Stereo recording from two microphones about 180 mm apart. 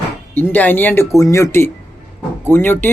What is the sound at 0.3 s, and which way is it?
Speech, 10° left (ahead or behind).